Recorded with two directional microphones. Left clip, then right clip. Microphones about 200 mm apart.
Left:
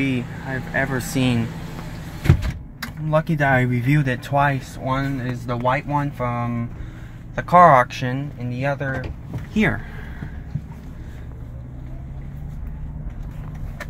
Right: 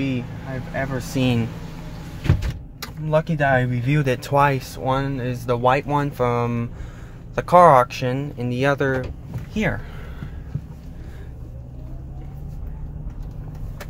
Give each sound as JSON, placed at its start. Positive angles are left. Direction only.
{"t": 0.0, "sound": "speech", "side_deg": 20}
{"t": 3.1, "sound": "speech", "side_deg": 5}
{"t": 3.3, "sound": "speech", "side_deg": 15}
{"t": 4.0, "sound": "speech", "side_deg": -10}
{"t": 7.3, "sound": "speech", "side_deg": -10}
{"t": 8.2, "sound": "speech", "side_deg": -25}
{"t": 9.5, "sound": "speech", "side_deg": 10}